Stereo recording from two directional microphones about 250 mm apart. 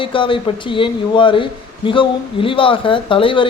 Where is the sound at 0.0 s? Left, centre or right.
Centre.